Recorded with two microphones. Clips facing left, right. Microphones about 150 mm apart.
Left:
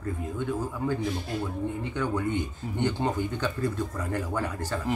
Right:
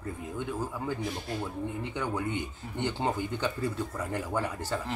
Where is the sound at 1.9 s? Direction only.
10° right (ahead or behind).